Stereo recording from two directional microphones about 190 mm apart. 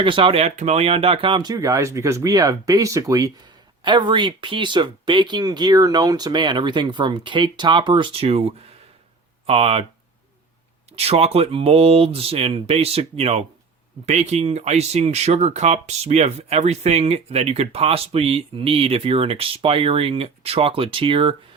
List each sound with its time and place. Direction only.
0.0 s speech: 25° right (ahead or behind)
10.9 s speech: 30° right (ahead or behind)